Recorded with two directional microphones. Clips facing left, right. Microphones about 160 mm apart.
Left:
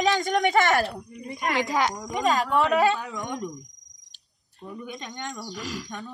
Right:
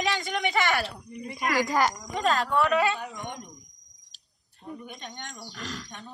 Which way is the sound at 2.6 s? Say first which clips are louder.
Left 4 dB; 35° left (ahead or behind).